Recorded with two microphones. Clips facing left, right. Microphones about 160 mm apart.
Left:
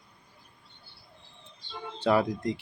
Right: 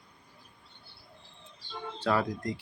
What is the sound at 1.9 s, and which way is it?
Speech, 20° left (ahead or behind).